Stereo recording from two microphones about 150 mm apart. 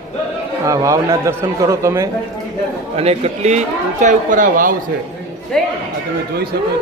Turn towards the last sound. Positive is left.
turn(degrees=5)  # may be behind; listen again after turning